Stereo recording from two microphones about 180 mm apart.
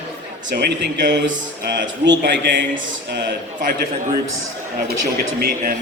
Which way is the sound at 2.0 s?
70° right (ahead or behind).